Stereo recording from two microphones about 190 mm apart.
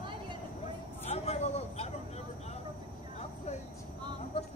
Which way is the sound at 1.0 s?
35° left (ahead or behind).